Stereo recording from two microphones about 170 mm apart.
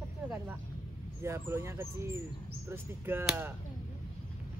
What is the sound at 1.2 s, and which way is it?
Speech, 15° right (ahead or behind).